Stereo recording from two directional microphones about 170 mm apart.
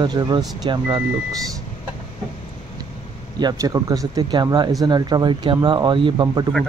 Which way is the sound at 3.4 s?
20° right (ahead or behind).